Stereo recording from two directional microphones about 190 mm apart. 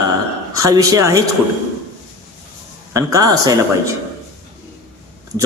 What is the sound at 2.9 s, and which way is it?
Speech, 20° right (ahead or behind).